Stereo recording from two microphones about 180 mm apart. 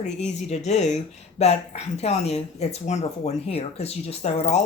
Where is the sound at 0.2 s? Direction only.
40° left (ahead or behind).